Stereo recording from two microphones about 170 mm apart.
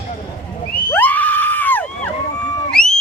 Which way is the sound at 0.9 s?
10° left (ahead or behind).